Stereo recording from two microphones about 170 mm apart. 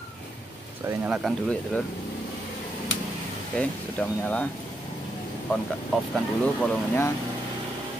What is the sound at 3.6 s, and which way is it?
Speech, 10° left (ahead or behind).